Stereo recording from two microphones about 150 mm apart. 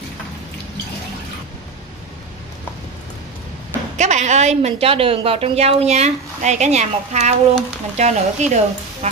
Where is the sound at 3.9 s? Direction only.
50° right (ahead or behind).